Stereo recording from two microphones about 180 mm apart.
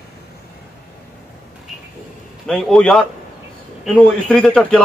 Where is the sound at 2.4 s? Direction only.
5° left (ahead or behind).